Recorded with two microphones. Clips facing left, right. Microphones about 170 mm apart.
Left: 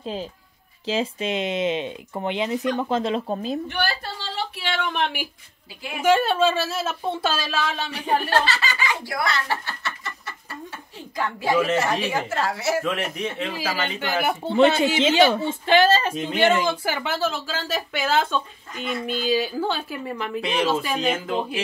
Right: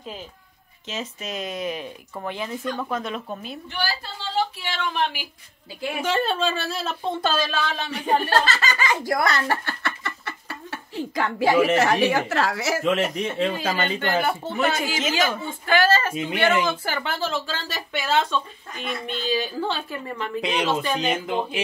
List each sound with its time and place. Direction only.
0.0 s speech: 30° left (ahead or behind)
3.6 s speech: 65° left (ahead or behind)
6.0 s speech: 10° left (ahead or behind)
8.5 s a sound: 45° right (ahead or behind); by 11.5 s 75° right (ahead or behind)
11.7 s speech: 75° right (ahead or behind); by 12.7 s 90° right
12.8 s speech: 25° right (ahead or behind)
13.5 s speech: 50° right (ahead or behind)
13.9 s speech: 10° left (ahead or behind)
14.5 s speech: 30° left (ahead or behind); by 21.2 s 5° left (ahead or behind)